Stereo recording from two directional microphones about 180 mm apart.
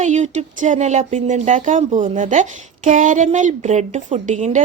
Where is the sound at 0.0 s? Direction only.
40° right (ahead or behind).